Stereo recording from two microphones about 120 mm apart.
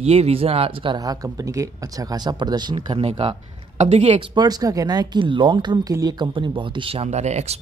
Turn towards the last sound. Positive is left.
turn(degrees=-65)  # may be behind; listen again after turning